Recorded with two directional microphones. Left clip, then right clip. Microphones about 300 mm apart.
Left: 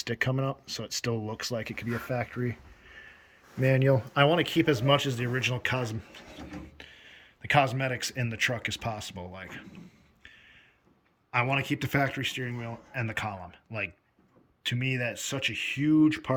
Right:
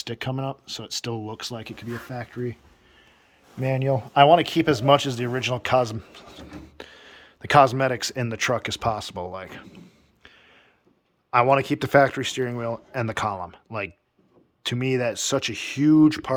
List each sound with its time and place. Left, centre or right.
0.0 s speech: centre
3.6 s speech: centre
11.3 s speech: centre